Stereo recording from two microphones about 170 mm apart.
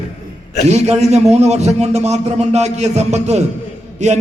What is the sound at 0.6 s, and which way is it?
A man's voice, 40° right (ahead or behind).